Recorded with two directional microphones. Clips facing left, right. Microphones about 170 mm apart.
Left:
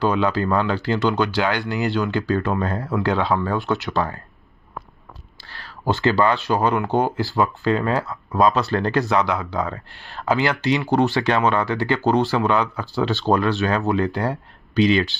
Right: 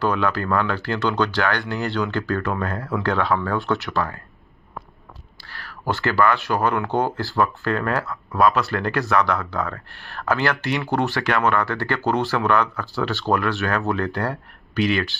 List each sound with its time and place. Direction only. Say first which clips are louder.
0.0 s speech: left 2 dB; 15° left (ahead or behind)
5.4 s speech: left 2 dB; 25° left (ahead or behind)